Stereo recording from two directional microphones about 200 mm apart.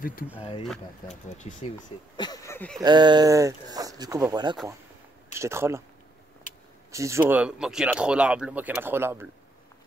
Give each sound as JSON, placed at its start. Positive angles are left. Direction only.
{"t": 0.0, "sound": "speech", "side_deg": 45}
{"t": 0.4, "sound": "speech", "side_deg": 30}
{"t": 2.1, "sound": "speech", "side_deg": 20}
{"t": 2.8, "sound": "speech", "side_deg": -20}
{"t": 6.9, "sound": "speech", "side_deg": -15}